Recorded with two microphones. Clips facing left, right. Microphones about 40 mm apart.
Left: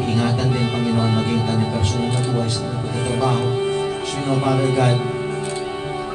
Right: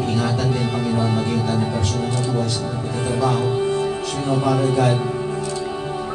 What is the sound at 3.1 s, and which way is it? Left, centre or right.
Speech, left.